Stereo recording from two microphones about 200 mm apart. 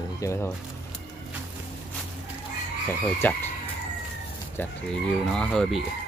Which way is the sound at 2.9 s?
10° left (ahead or behind).